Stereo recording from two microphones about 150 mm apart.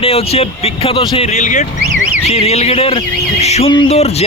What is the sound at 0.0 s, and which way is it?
Speech, 40° left (ahead or behind).